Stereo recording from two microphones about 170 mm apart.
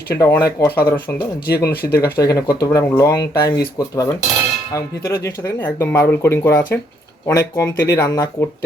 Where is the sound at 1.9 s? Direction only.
20° left (ahead or behind).